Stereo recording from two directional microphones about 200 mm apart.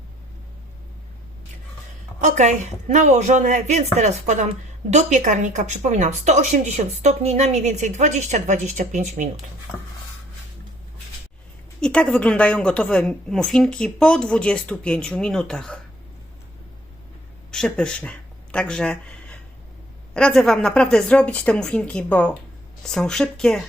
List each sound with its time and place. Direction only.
2.2 s speech: 35° right (ahead or behind)
11.8 s a woman's voice: 5° left (ahead or behind)
17.5 s a woman's voice: 5° left (ahead or behind)